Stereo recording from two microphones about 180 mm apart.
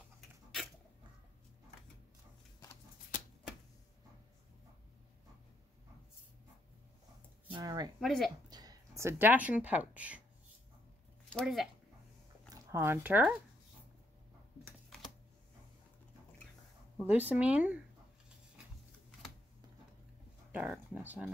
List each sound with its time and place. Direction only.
7.5 s a sound: 20° right (ahead or behind)
8.0 s speech: centre (ahead or behind)
8.5 s speech: 20° right (ahead or behind)
11.2 s speech: centre (ahead or behind)
12.7 s speech: 15° right (ahead or behind)
17.0 s speech: 10° right (ahead or behind)
20.5 s speech: 10° right (ahead or behind)